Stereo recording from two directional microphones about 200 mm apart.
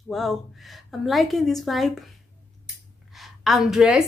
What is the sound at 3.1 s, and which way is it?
Speech, centre (ahead or behind).